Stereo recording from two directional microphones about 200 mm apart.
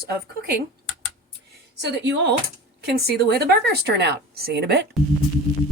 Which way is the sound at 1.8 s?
60° right (ahead or behind).